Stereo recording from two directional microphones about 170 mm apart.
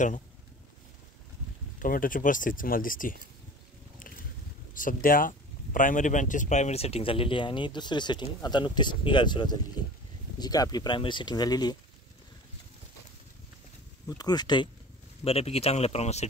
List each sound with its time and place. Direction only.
1.8 s speech: 55° left (ahead or behind)
4.7 s speech: 55° left (ahead or behind); by 11.7 s 25° left (ahead or behind)
14.0 s speech: 25° left (ahead or behind)
15.2 s speech: 35° left (ahead or behind)